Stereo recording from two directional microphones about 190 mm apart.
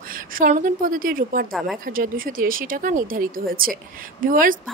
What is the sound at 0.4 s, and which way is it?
Speech, 45° right (ahead or behind).